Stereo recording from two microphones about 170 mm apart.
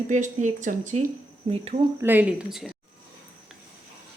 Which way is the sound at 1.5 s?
35° right (ahead or behind).